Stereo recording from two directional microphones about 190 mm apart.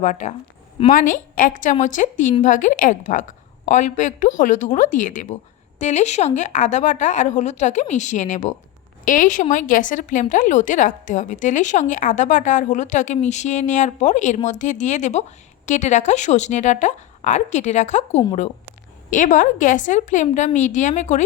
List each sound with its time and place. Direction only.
0.0 s a woman's voice: 40° left (ahead or behind)